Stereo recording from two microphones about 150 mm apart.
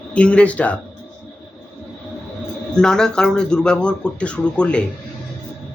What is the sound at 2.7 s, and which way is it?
Speech, 5° left (ahead or behind).